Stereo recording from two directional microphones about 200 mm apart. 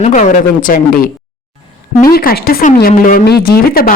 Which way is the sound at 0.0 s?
40° left (ahead or behind).